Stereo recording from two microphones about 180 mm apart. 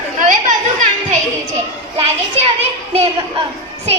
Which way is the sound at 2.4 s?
35° right (ahead or behind).